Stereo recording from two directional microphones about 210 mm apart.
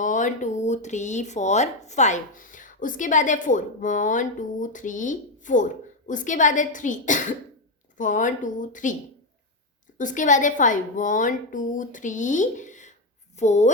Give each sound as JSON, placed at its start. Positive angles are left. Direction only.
{"t": 0.0, "sound": "speech", "side_deg": 35}
{"t": 10.0, "sound": "a woman's voice", "side_deg": 35}